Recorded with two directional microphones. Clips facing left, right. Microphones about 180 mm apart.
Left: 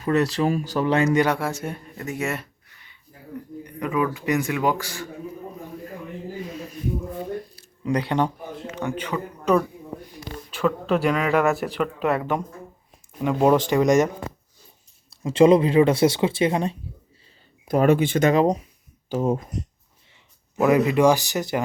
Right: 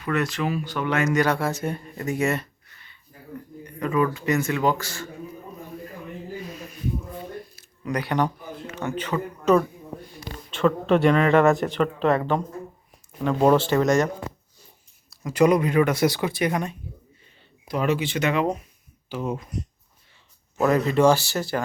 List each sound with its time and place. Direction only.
0.0 s speech: 35° left (ahead or behind)
1.2 s a man's voice: 15° left (ahead or behind)
7.5 s a sound: 25° left (ahead or behind); by 9.6 s 10° left (ahead or behind)
10.5 s a man's voice: centre (ahead or behind)
15.1 s speech: 25° left (ahead or behind)
17.7 s speech: 50° left (ahead or behind)
20.6 s a man's voice: 15° left (ahead or behind)